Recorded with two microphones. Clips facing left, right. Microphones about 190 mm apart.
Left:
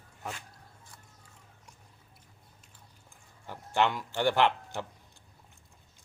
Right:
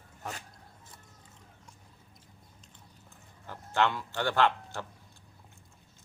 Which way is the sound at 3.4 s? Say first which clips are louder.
Left 1 dB; 15° left (ahead or behind).